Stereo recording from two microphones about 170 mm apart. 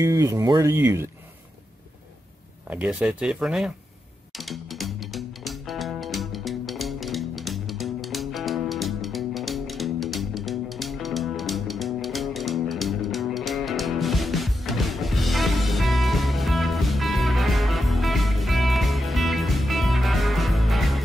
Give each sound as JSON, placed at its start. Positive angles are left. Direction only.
{"t": 0.0, "sound": "speech", "side_deg": -20}
{"t": 2.7, "sound": "speech", "side_deg": -10}
{"t": 4.4, "sound": "music", "side_deg": 0}